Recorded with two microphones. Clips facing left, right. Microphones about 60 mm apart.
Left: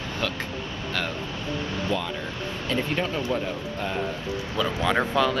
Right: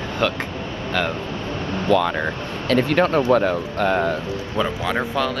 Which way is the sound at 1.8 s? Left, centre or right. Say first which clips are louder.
Right 14 dB; right.